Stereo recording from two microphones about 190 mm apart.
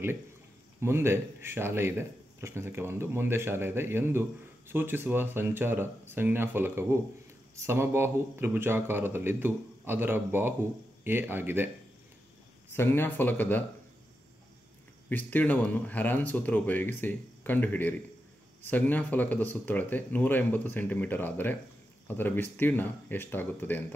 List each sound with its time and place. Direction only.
0.7 s speech: 15° right (ahead or behind)
12.7 s speech: 10° left (ahead or behind)
15.0 s speech: 10° left (ahead or behind)